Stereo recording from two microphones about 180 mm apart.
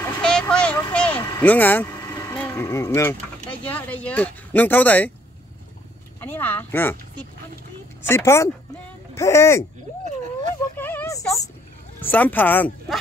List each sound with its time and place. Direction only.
0.2 s vehicle: 5° left (ahead or behind)
2.4 s speech: 15° left (ahead or behind)
6.2 s speech: 10° left (ahead or behind)
8.1 s speech: 15° left (ahead or behind)
10.8 s a sound: 10° left (ahead or behind)
12.0 s speech: 10° left (ahead or behind)